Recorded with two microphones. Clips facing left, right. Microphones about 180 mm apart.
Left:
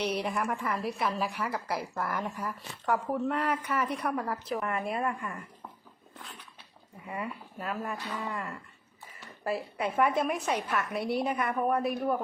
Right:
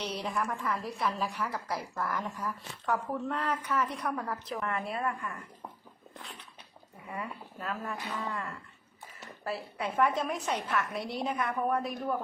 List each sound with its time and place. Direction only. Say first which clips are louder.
0.0 s a woman's voice: left 3 dB; 10° left (ahead or behind)
7.2 s a woman's voice: left 2 dB; 10° left (ahead or behind)